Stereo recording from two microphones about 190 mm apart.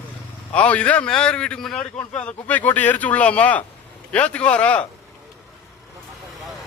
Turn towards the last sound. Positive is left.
turn(degrees=5)  # may be behind; listen again after turning